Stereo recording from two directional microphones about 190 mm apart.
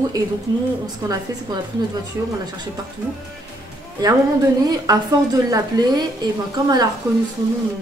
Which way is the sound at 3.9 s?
20° right (ahead or behind).